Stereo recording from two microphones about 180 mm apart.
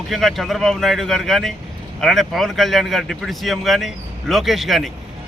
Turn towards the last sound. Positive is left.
turn(degrees=0)  # may be behind; listen again after turning